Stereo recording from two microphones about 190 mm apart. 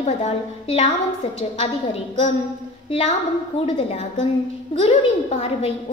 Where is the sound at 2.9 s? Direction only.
35° left (ahead or behind).